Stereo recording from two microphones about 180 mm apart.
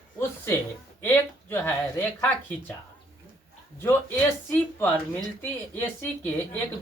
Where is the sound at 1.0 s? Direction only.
10° left (ahead or behind).